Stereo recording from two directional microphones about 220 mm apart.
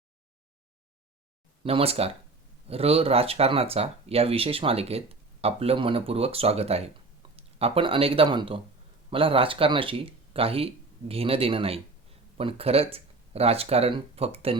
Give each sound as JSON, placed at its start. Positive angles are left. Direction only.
{"t": 1.6, "sound": "speech", "side_deg": -25}